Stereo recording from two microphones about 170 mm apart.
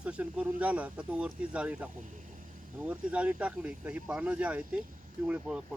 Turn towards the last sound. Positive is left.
turn(degrees=-5)  # may be behind; listen again after turning